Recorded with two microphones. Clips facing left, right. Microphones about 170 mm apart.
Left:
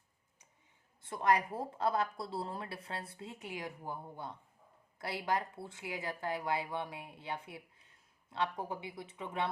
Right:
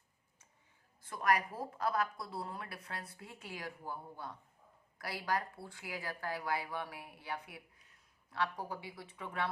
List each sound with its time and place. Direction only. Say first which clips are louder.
1.0 s speech: left 2 dB; 25° left (ahead or behind)